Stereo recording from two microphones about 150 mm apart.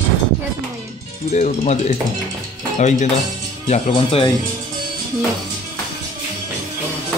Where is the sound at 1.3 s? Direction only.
50° left (ahead or behind).